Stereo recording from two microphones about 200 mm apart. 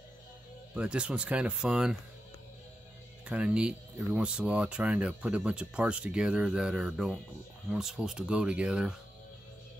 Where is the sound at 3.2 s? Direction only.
5° right (ahead or behind).